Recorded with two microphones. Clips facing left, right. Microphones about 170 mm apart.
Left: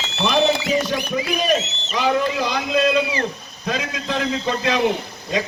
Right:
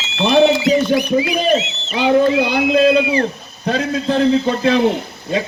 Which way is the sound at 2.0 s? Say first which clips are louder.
Right 7 dB; 30° right (ahead or behind).